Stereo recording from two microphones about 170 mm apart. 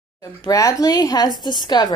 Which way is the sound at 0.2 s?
20° left (ahead or behind).